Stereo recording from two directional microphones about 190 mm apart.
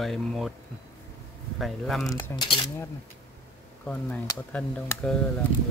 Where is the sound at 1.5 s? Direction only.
Centre (ahead or behind).